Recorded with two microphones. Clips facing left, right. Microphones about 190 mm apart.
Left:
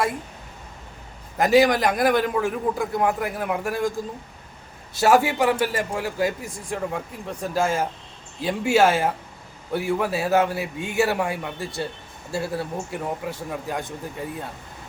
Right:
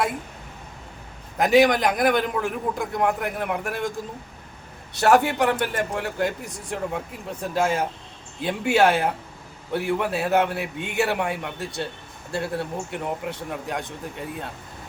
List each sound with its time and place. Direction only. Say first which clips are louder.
1.4 s a man's voice: even; centre (ahead or behind)